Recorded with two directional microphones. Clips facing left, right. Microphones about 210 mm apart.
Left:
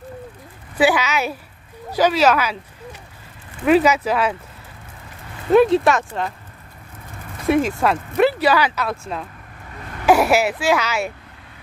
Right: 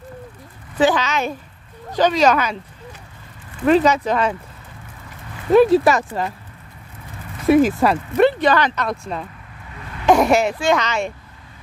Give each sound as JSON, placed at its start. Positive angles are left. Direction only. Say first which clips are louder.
{"t": 0.7, "sound": "speech", "louder": "even", "side_deg": 10}
{"t": 3.6, "sound": "speech", "louder": "even", "side_deg": 5}
{"t": 5.5, "sound": "speech", "louder": "right 1 dB", "side_deg": 0}
{"t": 7.4, "sound": "speech", "louder": "right 4 dB", "side_deg": 0}